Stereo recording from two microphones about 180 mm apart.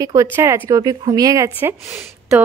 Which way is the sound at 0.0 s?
15° right (ahead or behind).